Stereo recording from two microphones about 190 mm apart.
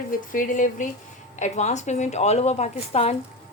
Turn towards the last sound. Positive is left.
turn(degrees=35)  # may be behind; listen again after turning